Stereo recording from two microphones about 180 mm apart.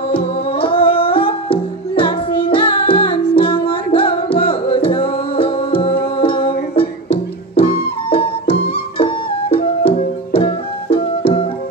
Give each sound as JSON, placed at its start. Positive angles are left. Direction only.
{"t": 0.1, "sound": "music", "side_deg": 30}